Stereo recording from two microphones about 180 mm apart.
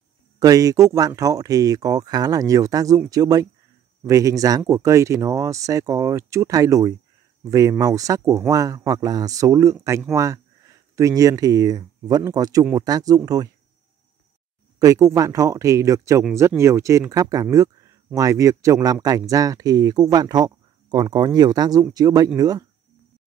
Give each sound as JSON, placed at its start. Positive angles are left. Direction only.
{"t": 0.4, "sound": "speech", "side_deg": -20}
{"t": 14.8, "sound": "speech", "side_deg": -20}